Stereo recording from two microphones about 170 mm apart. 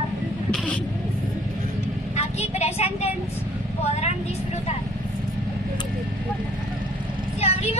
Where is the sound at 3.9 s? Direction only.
40° left (ahead or behind).